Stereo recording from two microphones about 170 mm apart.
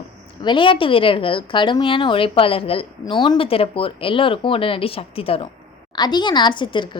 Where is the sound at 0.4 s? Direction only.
30° left (ahead or behind).